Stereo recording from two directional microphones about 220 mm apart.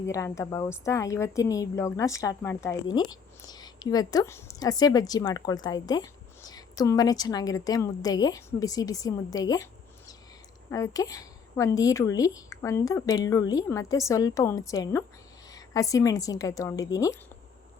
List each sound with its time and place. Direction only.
0.0 s a woman's voice: 15° left (ahead or behind)
10.7 s a woman's voice: 15° left (ahead or behind)